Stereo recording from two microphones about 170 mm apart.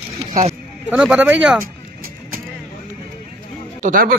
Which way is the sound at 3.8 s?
55° right (ahead or behind).